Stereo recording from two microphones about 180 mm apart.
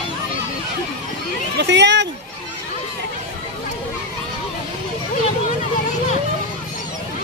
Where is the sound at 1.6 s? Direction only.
75° right (ahead or behind).